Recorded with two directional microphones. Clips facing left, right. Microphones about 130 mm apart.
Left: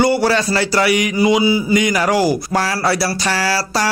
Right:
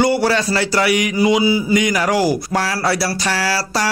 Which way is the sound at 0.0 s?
35° left (ahead or behind).